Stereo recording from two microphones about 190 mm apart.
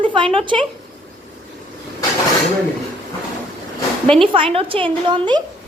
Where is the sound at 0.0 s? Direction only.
25° right (ahead or behind).